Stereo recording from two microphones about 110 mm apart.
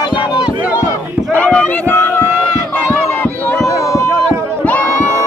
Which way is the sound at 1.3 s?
15° left (ahead or behind).